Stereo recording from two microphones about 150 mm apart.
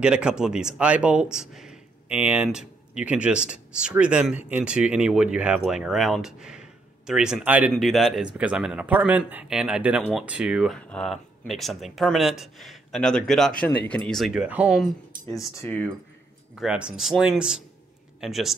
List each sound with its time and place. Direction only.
0.0 s speech: 5° right (ahead or behind)
7.7 s speech: centre (ahead or behind)
15.3 s speech: 15° left (ahead or behind)
16.5 s speech: 5° right (ahead or behind)